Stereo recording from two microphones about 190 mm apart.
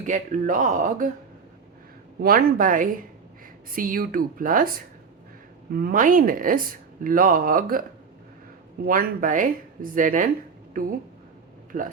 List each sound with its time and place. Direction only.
0.0 s speech: 40° right (ahead or behind)
2.2 s speech: 50° right (ahead or behind)
8.8 s speech: 50° right (ahead or behind)
11.7 s speech: 45° right (ahead or behind)